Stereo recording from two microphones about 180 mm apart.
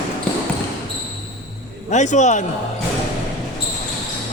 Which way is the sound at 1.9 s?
40° left (ahead or behind).